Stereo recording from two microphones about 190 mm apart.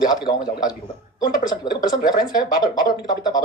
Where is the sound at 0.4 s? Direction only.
20° left (ahead or behind).